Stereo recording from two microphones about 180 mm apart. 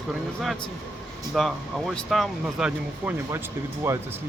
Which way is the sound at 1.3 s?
Centre (ahead or behind).